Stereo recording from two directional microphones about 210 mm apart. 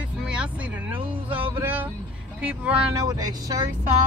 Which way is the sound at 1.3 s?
10° right (ahead or behind).